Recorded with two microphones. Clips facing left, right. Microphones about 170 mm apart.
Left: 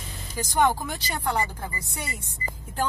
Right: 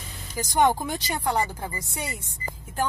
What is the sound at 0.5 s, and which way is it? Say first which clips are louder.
Speech: right 2 dB; 15° right (ahead or behind).